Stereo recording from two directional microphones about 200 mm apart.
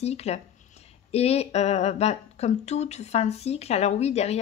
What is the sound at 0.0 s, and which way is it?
Speech, 30° left (ahead or behind).